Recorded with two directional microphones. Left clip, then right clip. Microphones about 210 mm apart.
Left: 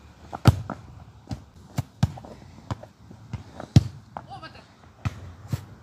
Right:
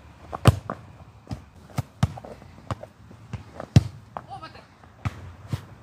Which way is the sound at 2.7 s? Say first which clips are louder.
Right 3 dB; 10° right (ahead or behind).